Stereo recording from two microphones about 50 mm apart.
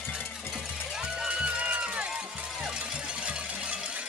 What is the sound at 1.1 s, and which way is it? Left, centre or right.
Music, centre.